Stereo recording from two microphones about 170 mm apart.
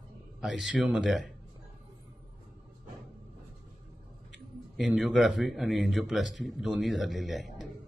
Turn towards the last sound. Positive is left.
turn(degrees=0)  # may be behind; listen again after turning